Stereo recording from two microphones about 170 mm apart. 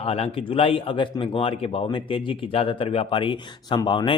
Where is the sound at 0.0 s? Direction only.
35° left (ahead or behind).